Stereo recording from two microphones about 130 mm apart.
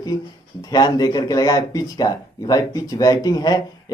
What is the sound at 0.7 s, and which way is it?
Speech, 30° left (ahead or behind).